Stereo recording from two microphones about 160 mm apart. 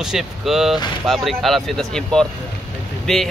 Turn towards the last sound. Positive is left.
turn(degrees=5)  # may be behind; listen again after turning